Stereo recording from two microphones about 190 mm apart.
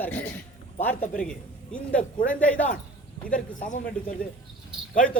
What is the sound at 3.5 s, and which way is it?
Speech, 40° left (ahead or behind).